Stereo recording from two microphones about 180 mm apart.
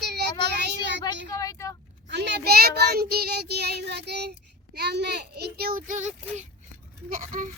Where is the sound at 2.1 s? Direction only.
70° right (ahead or behind); by 7.4 s 50° right (ahead or behind).